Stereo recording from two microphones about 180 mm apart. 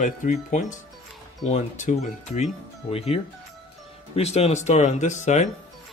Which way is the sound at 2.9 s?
35° left (ahead or behind).